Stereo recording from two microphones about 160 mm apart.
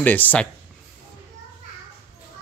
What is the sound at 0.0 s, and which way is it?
Speech, 10° left (ahead or behind).